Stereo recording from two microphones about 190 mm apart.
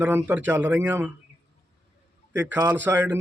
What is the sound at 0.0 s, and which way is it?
A man's voice, 10° right (ahead or behind).